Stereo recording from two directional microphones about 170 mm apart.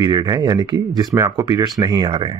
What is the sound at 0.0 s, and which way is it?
Speech, 25° right (ahead or behind).